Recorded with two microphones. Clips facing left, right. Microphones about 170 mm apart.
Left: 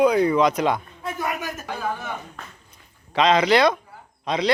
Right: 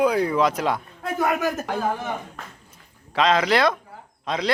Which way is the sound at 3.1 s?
Centre (ahead or behind).